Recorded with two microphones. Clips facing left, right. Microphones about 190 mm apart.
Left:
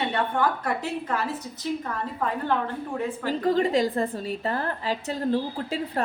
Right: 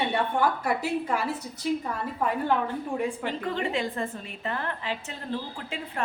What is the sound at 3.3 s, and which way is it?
A woman's voice, 35° left (ahead or behind).